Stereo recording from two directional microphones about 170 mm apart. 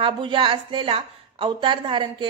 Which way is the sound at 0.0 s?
30° right (ahead or behind).